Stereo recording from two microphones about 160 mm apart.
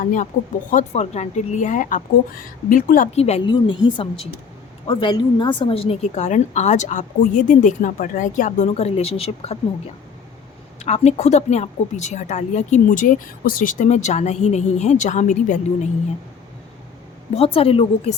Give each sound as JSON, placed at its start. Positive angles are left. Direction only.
{"t": 0.0, "sound": "a woman's voice", "side_deg": 55}
{"t": 3.2, "sound": "a woman's voice", "side_deg": 40}
{"t": 3.5, "sound": "a woman's voice", "side_deg": 30}
{"t": 10.8, "sound": "a woman's voice", "side_deg": 45}
{"t": 17.3, "sound": "a woman's voice", "side_deg": 35}